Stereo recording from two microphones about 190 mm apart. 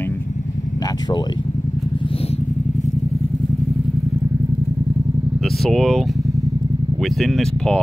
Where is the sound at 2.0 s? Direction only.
30° left (ahead or behind).